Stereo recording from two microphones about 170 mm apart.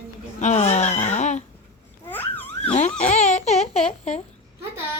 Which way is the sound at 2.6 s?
35° left (ahead or behind).